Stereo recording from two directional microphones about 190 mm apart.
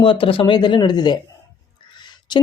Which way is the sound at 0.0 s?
25° left (ahead or behind).